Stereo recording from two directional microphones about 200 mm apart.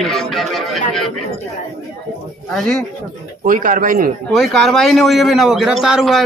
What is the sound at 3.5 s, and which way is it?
Speech, 40° right (ahead or behind).